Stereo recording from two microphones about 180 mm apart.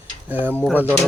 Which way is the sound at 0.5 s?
5° left (ahead or behind).